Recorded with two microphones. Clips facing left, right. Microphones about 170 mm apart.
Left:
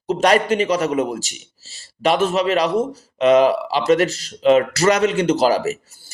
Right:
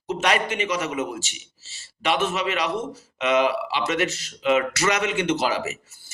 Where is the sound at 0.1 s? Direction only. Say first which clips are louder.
Left 7 dB; 35° left (ahead or behind).